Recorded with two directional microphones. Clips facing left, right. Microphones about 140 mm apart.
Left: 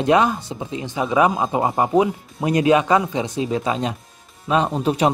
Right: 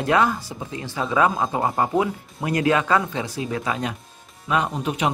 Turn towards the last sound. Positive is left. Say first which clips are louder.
# left 5 dB
turn(degrees=35)  # may be behind; listen again after turning